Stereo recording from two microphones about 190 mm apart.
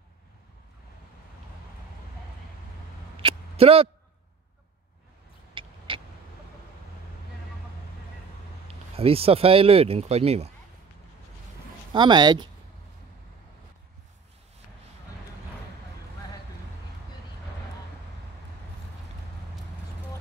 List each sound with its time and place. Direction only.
3.2 s a sound: 30° right (ahead or behind)
5.5 s vehicle: 25° right (ahead or behind)
8.6 s speech: 30° right (ahead or behind)
11.9 s speech: 25° right (ahead or behind)